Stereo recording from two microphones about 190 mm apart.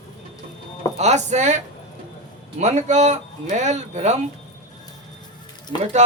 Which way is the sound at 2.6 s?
40° right (ahead or behind).